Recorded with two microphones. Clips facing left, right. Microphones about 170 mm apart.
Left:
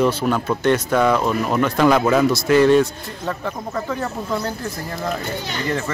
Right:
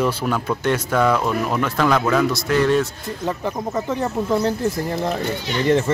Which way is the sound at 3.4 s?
20° right (ahead or behind).